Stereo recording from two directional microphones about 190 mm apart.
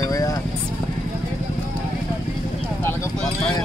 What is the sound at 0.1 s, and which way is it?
Vehicle, 15° left (ahead or behind).